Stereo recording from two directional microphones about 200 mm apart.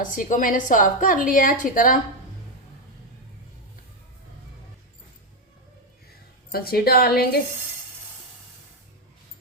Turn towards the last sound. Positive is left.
turn(degrees=50)  # may be behind; listen again after turning